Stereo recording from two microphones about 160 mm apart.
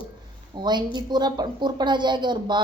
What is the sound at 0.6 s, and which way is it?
Speech, 25° right (ahead or behind).